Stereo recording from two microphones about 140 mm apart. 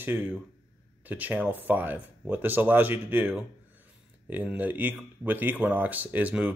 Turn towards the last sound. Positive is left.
turn(degrees=-10)  # may be behind; listen again after turning